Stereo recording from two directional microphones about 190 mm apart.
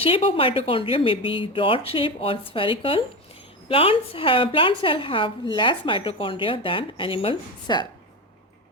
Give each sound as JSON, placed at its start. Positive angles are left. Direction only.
{"t": 0.0, "sound": "a woman's voice", "side_deg": 30}